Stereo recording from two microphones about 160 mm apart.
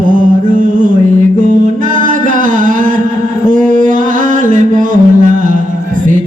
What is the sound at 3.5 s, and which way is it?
Mantra, 55° right (ahead or behind).